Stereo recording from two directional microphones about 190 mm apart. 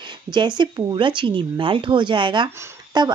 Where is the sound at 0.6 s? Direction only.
25° right (ahead or behind).